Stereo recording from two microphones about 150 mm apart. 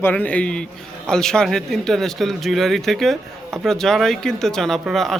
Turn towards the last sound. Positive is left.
turn(degrees=0)  # may be behind; listen again after turning